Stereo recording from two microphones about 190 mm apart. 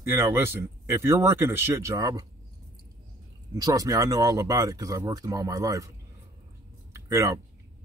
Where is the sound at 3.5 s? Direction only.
20° right (ahead or behind).